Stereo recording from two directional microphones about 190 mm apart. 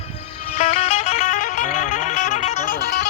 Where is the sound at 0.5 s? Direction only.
35° left (ahead or behind).